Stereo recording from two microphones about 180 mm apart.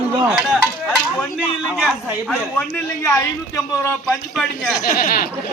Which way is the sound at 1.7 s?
5° left (ahead or behind).